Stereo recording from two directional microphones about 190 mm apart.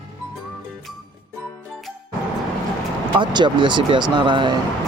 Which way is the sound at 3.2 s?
25° right (ahead or behind).